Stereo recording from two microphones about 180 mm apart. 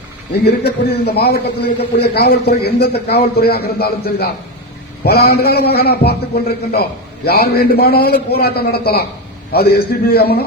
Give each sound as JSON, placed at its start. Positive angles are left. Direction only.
{"t": 0.4, "sound": "a man's voice", "side_deg": 65}